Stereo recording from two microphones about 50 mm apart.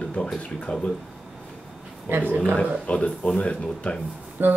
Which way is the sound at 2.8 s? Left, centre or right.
Left.